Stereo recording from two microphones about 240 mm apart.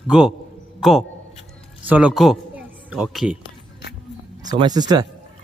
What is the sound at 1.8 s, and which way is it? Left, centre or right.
Speech, centre.